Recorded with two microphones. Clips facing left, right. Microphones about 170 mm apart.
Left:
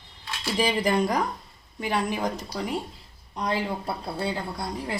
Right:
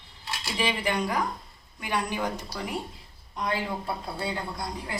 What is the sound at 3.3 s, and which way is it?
Speech, 35° left (ahead or behind).